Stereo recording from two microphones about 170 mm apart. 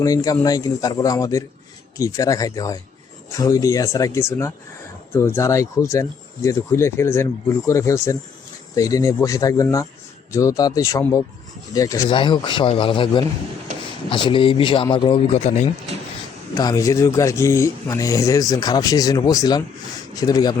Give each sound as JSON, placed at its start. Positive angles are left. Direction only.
{"t": 0.0, "sound": "a man's voice", "side_deg": 20}
{"t": 16.6, "sound": "a man's voice", "side_deg": 20}